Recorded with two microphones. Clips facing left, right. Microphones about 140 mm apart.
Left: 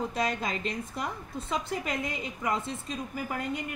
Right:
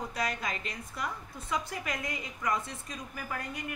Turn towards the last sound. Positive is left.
turn(degrees=25)  # may be behind; listen again after turning